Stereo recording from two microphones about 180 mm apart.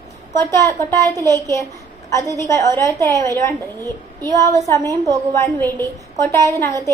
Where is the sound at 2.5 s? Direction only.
15° left (ahead or behind).